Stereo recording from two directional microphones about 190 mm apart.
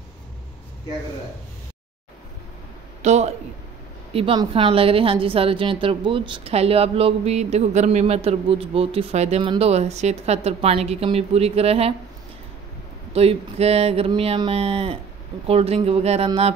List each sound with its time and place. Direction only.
3.0 s a sound: 35° right (ahead or behind)
4.1 s a woman's voice: 30° right (ahead or behind)
13.1 s a woman's voice: 30° right (ahead or behind)